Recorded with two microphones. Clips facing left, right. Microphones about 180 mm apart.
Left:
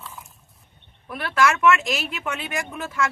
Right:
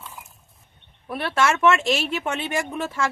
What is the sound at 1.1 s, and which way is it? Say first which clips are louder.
Speech: even; 30° right (ahead or behind).